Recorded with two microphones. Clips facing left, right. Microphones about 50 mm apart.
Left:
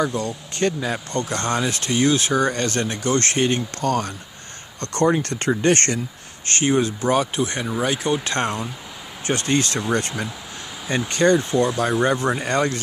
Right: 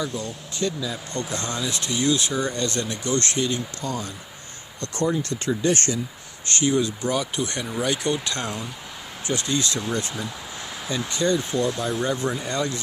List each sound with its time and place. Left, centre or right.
0.0 s speech: left
3.8 s speech: left
4.9 s speech: left
6.5 s speech: left; by 8.2 s centre
8.2 s speech: left
9.9 s speech: left